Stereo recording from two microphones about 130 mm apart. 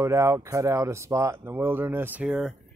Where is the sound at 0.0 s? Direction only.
20° right (ahead or behind).